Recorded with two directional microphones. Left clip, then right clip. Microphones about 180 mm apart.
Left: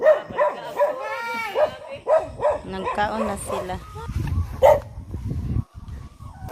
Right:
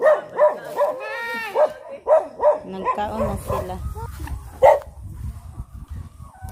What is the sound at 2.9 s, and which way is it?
Speech, centre (ahead or behind).